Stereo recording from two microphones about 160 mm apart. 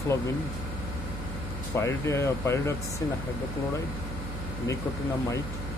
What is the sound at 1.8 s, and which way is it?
Speech, 15° left (ahead or behind).